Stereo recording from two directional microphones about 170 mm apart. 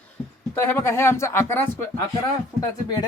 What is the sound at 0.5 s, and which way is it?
Speech, 15° left (ahead or behind).